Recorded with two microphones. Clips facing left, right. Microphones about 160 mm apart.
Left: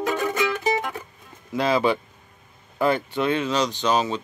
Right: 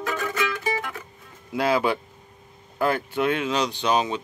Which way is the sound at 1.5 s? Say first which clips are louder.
Left 1 dB; 10° right (ahead or behind).